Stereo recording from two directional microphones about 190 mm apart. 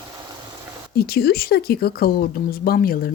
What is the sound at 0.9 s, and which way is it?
Speech, 55° left (ahead or behind).